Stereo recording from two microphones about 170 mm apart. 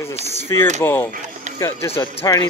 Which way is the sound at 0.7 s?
15° left (ahead or behind).